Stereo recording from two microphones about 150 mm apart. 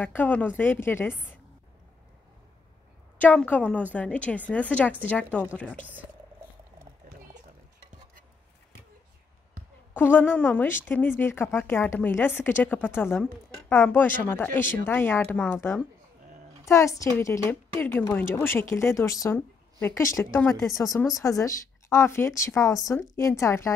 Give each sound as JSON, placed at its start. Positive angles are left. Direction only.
{"t": 0.0, "sound": "speech", "side_deg": 10}
{"t": 3.2, "sound": "speech", "side_deg": 10}
{"t": 9.9, "sound": "a woman's voice", "side_deg": 15}